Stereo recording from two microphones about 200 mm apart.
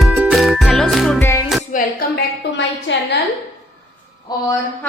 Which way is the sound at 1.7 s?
40° left (ahead or behind).